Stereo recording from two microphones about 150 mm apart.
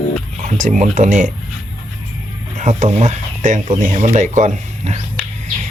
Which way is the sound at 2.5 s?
50° right (ahead or behind).